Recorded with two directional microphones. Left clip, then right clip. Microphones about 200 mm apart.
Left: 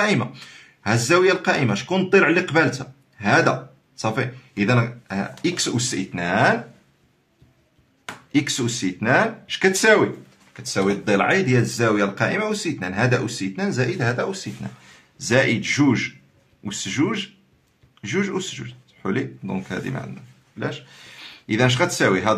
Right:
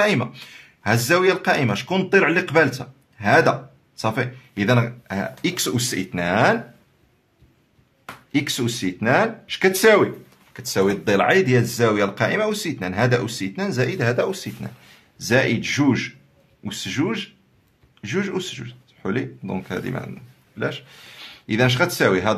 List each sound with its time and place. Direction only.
0.0 s speech: 35° right (ahead or behind)
8.3 s speech: 30° right (ahead or behind)
10.5 s speech: 50° right (ahead or behind)
15.1 s speech: 25° right (ahead or behind)